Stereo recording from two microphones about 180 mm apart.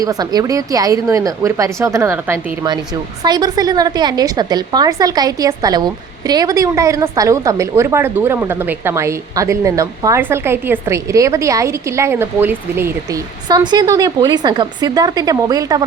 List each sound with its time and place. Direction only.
0.0 s a woman's voice: 20° right (ahead or behind)
3.2 s a woman's voice: 25° right (ahead or behind)